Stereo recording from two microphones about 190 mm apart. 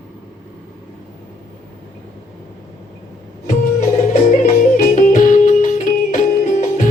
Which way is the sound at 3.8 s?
45° left (ahead or behind).